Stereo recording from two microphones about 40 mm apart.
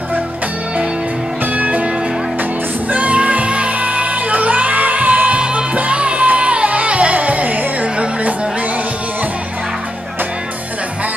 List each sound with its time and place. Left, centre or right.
1.5 s music: right
2.9 s music: right
5.4 s music: right